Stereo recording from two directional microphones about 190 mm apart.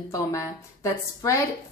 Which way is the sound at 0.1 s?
15° left (ahead or behind).